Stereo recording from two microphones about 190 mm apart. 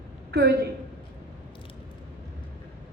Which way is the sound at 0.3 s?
60° right (ahead or behind).